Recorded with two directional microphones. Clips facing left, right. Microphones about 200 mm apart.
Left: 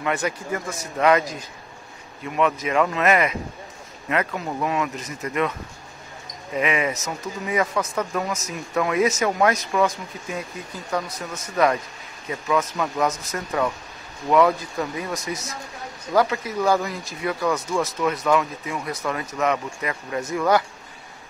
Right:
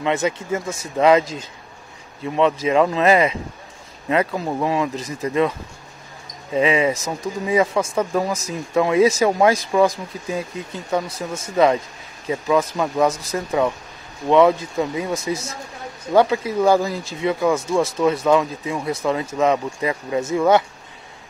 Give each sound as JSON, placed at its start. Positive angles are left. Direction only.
{"t": 0.0, "sound": "speech", "side_deg": -25}
{"t": 6.5, "sound": "speech", "side_deg": -30}